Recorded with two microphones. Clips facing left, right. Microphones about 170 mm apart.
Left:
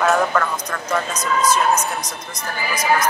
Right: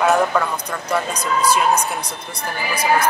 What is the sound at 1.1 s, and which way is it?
Speech, 35° right (ahead or behind).